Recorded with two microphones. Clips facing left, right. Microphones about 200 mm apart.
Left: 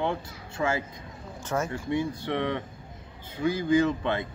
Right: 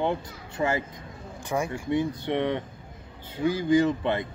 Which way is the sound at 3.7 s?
15° right (ahead or behind).